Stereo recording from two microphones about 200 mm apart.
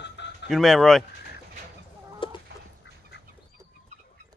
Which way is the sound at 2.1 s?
25° left (ahead or behind).